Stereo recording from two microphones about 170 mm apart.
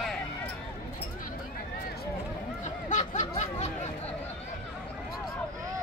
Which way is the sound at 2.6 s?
45° left (ahead or behind).